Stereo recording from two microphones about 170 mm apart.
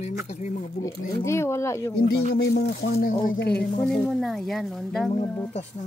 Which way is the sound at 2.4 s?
70° left (ahead or behind).